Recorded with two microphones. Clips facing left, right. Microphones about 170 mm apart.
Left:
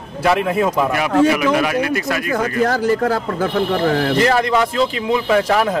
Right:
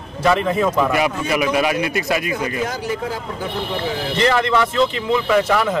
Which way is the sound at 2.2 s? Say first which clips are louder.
Left 4 dB; 50° left (ahead or behind).